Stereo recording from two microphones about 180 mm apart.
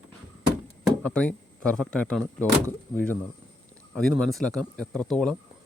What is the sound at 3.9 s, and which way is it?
Speech, 5° left (ahead or behind).